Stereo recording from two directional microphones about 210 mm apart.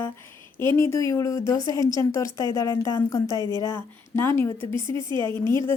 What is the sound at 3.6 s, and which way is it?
A woman's voice, 10° left (ahead or behind).